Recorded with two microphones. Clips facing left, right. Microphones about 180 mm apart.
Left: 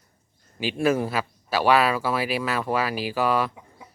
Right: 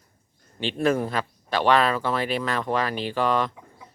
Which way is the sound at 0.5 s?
10° left (ahead or behind).